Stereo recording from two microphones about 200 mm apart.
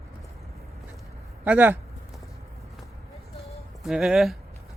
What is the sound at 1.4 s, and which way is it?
Speech, 10° right (ahead or behind).